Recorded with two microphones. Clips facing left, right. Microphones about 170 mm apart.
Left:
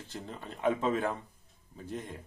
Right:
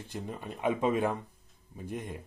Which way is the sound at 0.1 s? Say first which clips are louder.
Right 4 dB; 15° right (ahead or behind).